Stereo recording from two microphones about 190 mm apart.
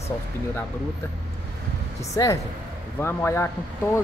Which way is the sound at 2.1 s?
15° left (ahead or behind).